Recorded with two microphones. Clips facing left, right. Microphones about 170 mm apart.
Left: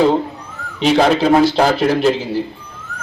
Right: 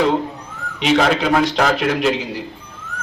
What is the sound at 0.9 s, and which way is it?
A man's voice, 30° left (ahead or behind).